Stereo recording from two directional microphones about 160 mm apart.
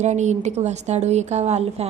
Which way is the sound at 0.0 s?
45° right (ahead or behind).